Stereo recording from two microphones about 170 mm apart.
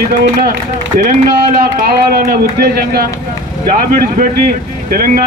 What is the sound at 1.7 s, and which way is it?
Speech, 60° right (ahead or behind).